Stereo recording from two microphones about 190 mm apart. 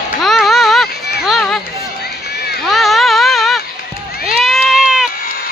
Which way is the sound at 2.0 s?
55° left (ahead or behind).